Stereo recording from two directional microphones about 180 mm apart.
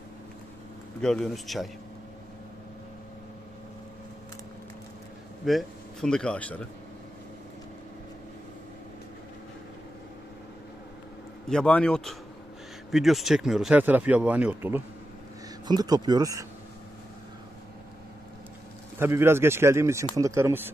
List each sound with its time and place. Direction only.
1.0 s speech: 5° left (ahead or behind)
5.4 s a man's voice: centre (ahead or behind)
11.4 s speech: 5° left (ahead or behind)
15.6 s speech: 20° right (ahead or behind)
18.9 s speech: 15° right (ahead or behind)